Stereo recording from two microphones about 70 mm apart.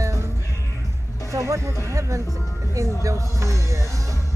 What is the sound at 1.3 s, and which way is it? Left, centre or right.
Speech, right.